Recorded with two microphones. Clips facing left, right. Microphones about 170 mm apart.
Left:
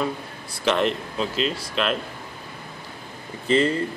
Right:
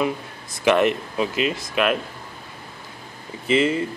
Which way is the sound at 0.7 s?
10° right (ahead or behind).